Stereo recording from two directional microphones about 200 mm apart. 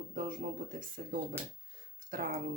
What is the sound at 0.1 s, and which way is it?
Speech, 40° right (ahead or behind).